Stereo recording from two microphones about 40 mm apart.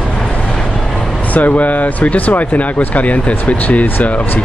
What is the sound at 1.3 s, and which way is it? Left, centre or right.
Speech, left.